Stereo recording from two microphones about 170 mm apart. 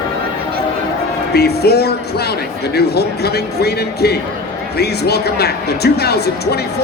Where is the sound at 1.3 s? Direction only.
70° left (ahead or behind).